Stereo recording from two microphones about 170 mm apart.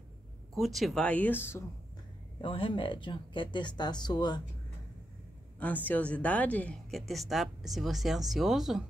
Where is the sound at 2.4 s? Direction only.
30° left (ahead or behind).